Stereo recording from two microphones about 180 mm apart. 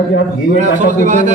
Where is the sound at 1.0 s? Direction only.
45° right (ahead or behind).